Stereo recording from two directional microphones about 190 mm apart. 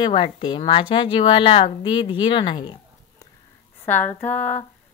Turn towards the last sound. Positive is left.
turn(degrees=10)  # may be behind; listen again after turning